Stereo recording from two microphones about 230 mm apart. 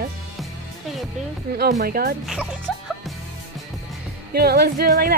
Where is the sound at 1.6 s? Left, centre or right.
Right.